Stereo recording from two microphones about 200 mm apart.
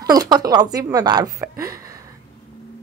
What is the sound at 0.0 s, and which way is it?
A woman's voice, 20° right (ahead or behind).